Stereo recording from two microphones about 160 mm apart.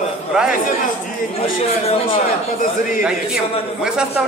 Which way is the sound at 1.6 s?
40° left (ahead or behind).